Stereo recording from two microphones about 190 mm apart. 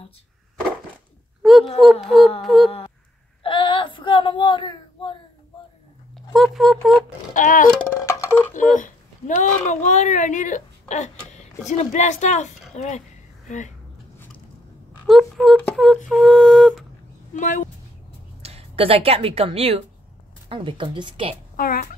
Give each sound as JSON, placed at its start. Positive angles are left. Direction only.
{"t": 1.4, "sound": "a sound", "side_deg": 0}
{"t": 1.8, "sound": "music", "side_deg": 0}
{"t": 2.4, "sound": "speech", "side_deg": 0}
{"t": 3.4, "sound": "child singing", "side_deg": 25}
{"t": 6.3, "sound": "music", "side_deg": 0}
{"t": 7.3, "sound": "speech", "side_deg": 45}
{"t": 8.0, "sound": "music", "side_deg": 15}
{"t": 8.5, "sound": "speech", "side_deg": 45}
{"t": 15.0, "sound": "a sound", "side_deg": 0}
{"t": 16.1, "sound": "music", "side_deg": 0}
{"t": 17.3, "sound": "speech", "side_deg": 40}
{"t": 18.4, "sound": "a woman's voice", "side_deg": -35}
{"t": 21.5, "sound": "speech", "side_deg": 50}